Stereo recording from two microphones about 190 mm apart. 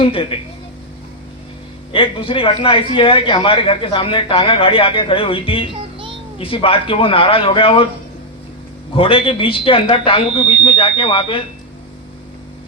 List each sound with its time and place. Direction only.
0.0 s a man's voice: 30° left (ahead or behind)
1.9 s a man's voice: 30° left (ahead or behind)
9.0 s a man's voice: 30° left (ahead or behind)